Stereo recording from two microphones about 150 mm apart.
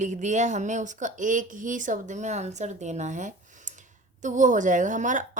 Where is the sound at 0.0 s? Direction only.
55° right (ahead or behind).